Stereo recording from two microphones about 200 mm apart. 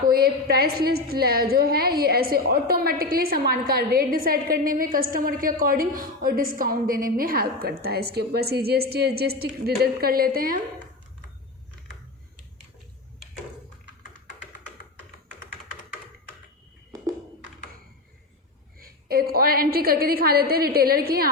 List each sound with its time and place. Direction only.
0.1 s a woman's voice: 50° right (ahead or behind)
18.8 s a woman's voice: 50° right (ahead or behind)